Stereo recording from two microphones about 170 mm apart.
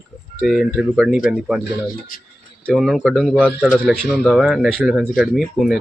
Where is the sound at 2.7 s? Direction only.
Centre (ahead or behind).